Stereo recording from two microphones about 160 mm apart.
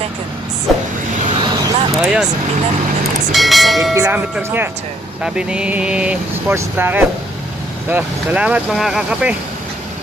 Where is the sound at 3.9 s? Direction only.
15° right (ahead or behind).